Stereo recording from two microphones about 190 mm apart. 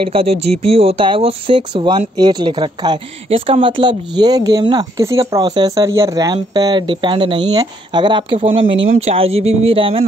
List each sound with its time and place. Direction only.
0.0 s speech: 30° right (ahead or behind)